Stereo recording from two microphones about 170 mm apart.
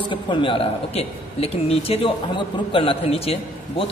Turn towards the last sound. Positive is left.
turn(degrees=35)  # may be behind; listen again after turning